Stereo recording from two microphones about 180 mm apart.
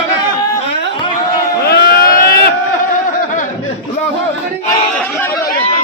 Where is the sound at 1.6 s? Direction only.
60° left (ahead or behind).